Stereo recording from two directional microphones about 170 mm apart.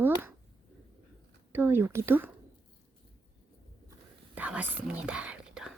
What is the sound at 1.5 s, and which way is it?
Speech, 10° right (ahead or behind).